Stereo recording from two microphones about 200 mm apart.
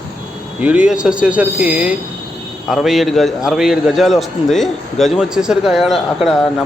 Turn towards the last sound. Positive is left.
turn(degrees=0)  # may be behind; listen again after turning